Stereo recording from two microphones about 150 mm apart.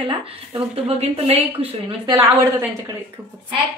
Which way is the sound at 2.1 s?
20° right (ahead or behind).